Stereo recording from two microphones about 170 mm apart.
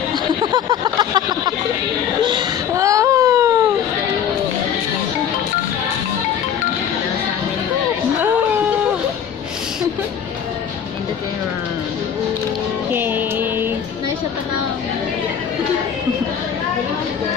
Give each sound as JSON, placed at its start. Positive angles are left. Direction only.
{"t": 0.4, "sound": "a sound", "side_deg": -25}
{"t": 2.2, "sound": "baby cry", "side_deg": -20}
{"t": 12.9, "sound": "music", "side_deg": -10}